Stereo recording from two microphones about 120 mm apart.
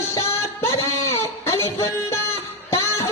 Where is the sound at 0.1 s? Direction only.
20° left (ahead or behind).